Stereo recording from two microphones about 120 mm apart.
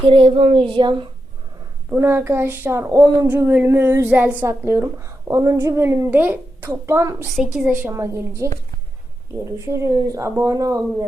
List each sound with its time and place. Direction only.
0.0 s speech: 45° right (ahead or behind)
1.9 s a woman's voice: 20° right (ahead or behind)
3.3 s a woman's voice: 15° right (ahead or behind)
7.3 s a woman's voice: centre (ahead or behind)
7.9 s a woman's voice: 25° right (ahead or behind)